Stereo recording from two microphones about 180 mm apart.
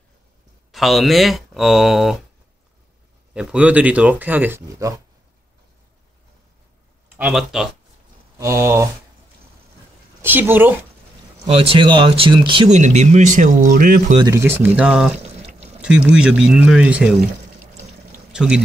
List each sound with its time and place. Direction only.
0.7 s speech: centre (ahead or behind)
3.3 s speech: 5° right (ahead or behind)
7.2 s speech: 5° right (ahead or behind)
8.4 s speech: 15° right (ahead or behind)
10.2 s speech: 10° right (ahead or behind)
11.4 s speech: 30° right (ahead or behind)
12.7 s speech: 40° right (ahead or behind)
14.2 s speech: 15° right (ahead or behind)
18.1 s pour: 5° right (ahead or behind)